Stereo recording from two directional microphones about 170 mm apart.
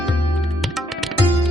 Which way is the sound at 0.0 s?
Centre (ahead or behind).